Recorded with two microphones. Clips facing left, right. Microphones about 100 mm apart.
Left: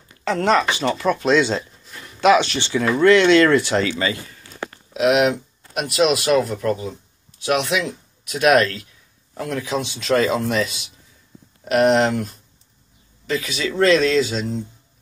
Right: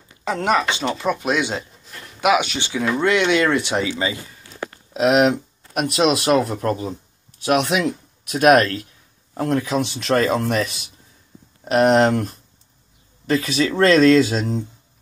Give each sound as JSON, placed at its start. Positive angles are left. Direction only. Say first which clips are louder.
{"t": 0.2, "sound": "speech", "louder": "left 2 dB", "side_deg": -15}
{"t": 4.9, "sound": "speech", "louder": "right 1 dB", "side_deg": -35}